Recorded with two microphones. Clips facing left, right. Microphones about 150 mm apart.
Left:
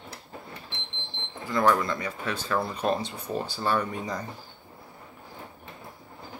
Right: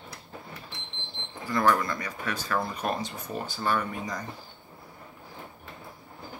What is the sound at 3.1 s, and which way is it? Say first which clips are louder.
Speech: left 3 dB; 30° left (ahead or behind).